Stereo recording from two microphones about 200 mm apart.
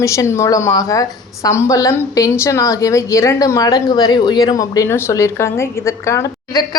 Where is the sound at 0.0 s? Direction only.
15° left (ahead or behind).